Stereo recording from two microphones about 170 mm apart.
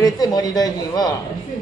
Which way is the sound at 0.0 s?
20° left (ahead or behind).